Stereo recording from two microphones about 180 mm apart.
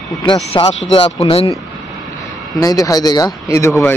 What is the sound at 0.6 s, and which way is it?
Speech, 30° left (ahead or behind).